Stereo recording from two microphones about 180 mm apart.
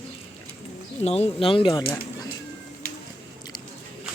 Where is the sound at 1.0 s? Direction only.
35° left (ahead or behind).